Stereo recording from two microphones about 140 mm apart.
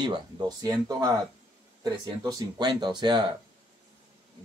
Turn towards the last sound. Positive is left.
turn(degrees=-30)  # may be behind; listen again after turning